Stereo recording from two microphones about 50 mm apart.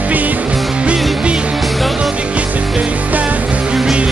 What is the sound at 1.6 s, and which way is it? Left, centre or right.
Music, centre.